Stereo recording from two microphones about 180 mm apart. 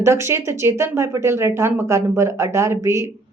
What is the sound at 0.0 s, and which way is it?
A woman's voice, 15° right (ahead or behind).